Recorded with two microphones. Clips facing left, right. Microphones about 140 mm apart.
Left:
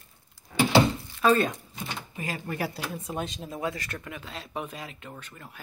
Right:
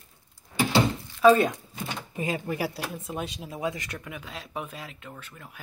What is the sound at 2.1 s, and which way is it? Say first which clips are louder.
Speech: right 4 dB; 20° right (ahead or behind).